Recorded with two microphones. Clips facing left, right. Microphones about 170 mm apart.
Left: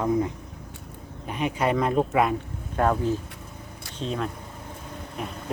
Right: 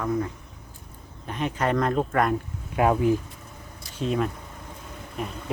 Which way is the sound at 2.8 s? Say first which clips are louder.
Right 2 dB; 10° right (ahead or behind).